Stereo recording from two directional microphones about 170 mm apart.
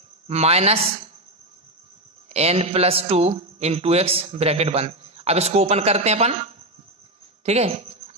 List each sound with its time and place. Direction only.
0.3 s a man's voice: 40° right (ahead or behind)
2.3 s a man's voice: 35° right (ahead or behind)
7.4 s a woman's voice: 40° right (ahead or behind)